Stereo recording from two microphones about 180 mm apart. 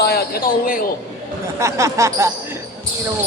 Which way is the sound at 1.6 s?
15° right (ahead or behind).